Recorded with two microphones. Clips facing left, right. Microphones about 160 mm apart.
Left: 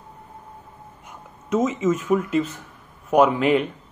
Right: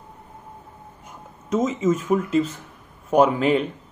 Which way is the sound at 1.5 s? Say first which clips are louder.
Even; 30° right (ahead or behind).